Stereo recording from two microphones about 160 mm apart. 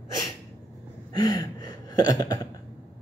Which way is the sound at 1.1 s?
25° left (ahead or behind).